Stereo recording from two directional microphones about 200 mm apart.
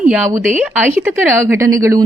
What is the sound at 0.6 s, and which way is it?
Speech, 5° right (ahead or behind).